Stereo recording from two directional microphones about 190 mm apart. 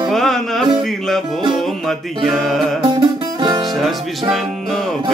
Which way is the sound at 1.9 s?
Centre (ahead or behind).